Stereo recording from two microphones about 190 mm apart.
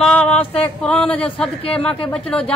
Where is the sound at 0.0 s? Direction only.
5° left (ahead or behind).